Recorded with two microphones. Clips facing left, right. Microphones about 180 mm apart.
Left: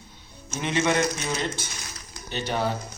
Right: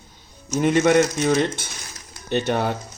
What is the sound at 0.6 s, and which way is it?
Speech, 50° right (ahead or behind).